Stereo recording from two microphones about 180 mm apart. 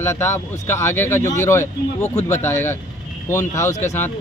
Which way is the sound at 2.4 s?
15° left (ahead or behind).